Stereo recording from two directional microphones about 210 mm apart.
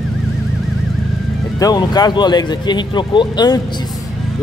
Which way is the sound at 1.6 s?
20° left (ahead or behind).